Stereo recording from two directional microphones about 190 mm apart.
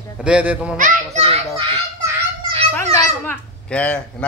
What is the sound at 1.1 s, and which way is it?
Speech, 30° right (ahead or behind).